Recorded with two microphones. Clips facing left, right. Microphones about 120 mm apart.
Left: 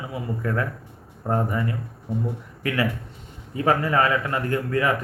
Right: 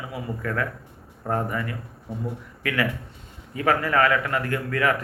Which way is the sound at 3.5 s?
25° left (ahead or behind).